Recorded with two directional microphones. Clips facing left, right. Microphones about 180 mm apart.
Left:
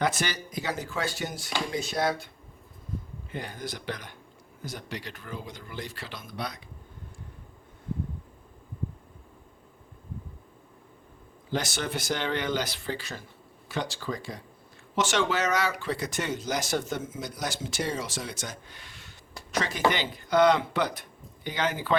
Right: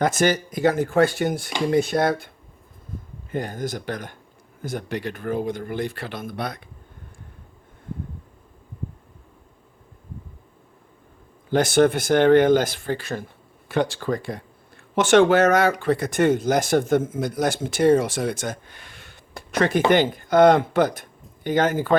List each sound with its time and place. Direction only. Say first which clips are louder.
0.0 s speech: right 9 dB; 45° right (ahead or behind)
3.3 s speech: right 9 dB; 45° right (ahead or behind)
11.5 s speech: right 13 dB; 55° right (ahead or behind)